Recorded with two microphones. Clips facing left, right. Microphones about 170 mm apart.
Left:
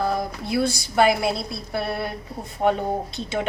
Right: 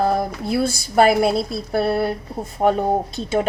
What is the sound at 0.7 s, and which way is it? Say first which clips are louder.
A woman's voice: right 4 dB; 45° right (ahead or behind).